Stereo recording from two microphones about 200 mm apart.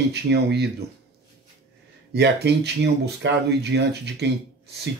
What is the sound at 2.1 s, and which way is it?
Speech, 55° right (ahead or behind).